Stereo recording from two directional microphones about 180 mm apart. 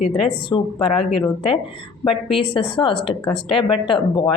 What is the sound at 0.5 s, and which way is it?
A woman's voice, 30° left (ahead or behind).